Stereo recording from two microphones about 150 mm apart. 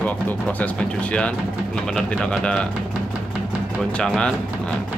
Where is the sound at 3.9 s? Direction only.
5° left (ahead or behind).